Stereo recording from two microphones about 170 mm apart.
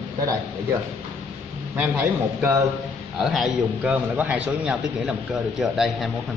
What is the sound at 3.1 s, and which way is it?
A man's voice, centre (ahead or behind).